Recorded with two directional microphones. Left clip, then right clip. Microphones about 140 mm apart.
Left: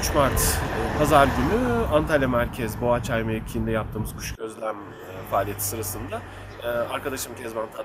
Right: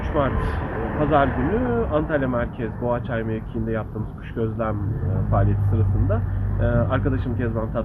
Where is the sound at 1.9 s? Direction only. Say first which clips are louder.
Left 1 dB; 30° left (ahead or behind).